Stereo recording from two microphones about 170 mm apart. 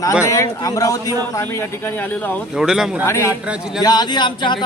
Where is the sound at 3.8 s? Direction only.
25° left (ahead or behind).